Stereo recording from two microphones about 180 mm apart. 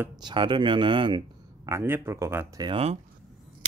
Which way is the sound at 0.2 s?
25° right (ahead or behind).